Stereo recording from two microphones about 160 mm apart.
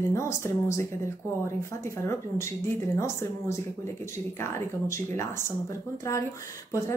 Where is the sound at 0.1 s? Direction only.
15° left (ahead or behind).